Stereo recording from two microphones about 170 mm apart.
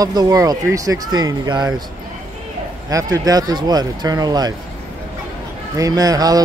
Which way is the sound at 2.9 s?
20° right (ahead or behind).